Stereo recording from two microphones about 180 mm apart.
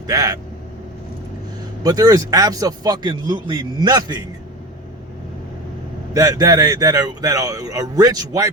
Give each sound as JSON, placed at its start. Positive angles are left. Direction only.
{"t": 0.1, "sound": "speech", "side_deg": -20}
{"t": 1.8, "sound": "speech", "side_deg": -20}
{"t": 6.1, "sound": "speech", "side_deg": -20}